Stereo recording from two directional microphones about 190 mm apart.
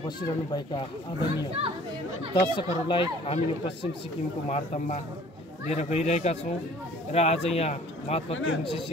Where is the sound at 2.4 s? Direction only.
25° left (ahead or behind).